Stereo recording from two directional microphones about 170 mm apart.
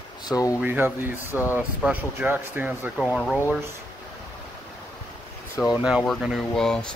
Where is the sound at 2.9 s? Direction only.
Centre (ahead or behind).